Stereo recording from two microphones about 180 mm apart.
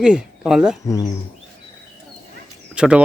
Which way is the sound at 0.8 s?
20° left (ahead or behind).